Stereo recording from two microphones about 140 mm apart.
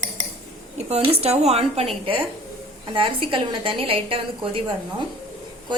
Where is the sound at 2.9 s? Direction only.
35° right (ahead or behind).